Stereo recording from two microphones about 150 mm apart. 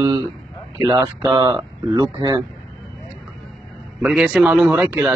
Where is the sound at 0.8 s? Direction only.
30° right (ahead or behind).